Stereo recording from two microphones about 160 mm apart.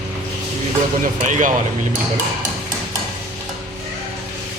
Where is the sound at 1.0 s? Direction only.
55° right (ahead or behind).